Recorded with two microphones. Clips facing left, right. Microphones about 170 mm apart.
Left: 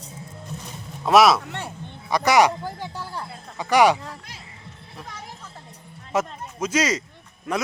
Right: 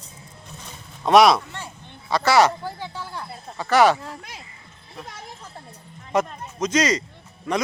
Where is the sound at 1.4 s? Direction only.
65° left (ahead or behind).